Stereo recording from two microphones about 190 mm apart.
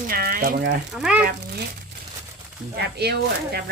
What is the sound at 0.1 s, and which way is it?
Speech, 50° right (ahead or behind).